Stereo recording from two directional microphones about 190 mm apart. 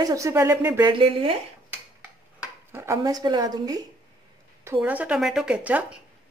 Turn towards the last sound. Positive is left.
turn(degrees=-5)  # may be behind; listen again after turning